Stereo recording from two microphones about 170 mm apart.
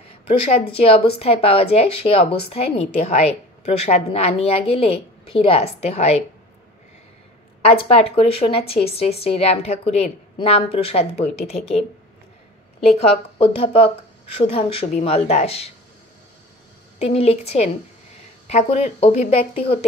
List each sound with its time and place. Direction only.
0.1 s a woman's voice: 35° left (ahead or behind)
7.6 s a woman's voice: 35° left (ahead or behind)
12.9 s a woman's voice: 35° left (ahead or behind)
17.0 s a woman's voice: 35° left (ahead or behind)